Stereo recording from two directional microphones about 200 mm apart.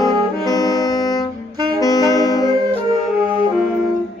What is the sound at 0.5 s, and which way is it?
Music, 20° left (ahead or behind).